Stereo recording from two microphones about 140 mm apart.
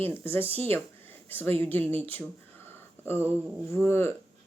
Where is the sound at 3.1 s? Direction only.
45° right (ahead or behind).